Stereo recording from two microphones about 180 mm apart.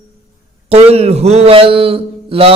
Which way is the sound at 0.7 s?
35° right (ahead or behind).